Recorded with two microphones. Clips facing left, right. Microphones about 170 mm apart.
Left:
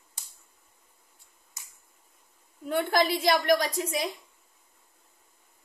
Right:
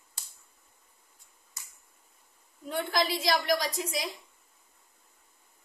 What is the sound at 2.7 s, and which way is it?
A woman's voice, 55° left (ahead or behind).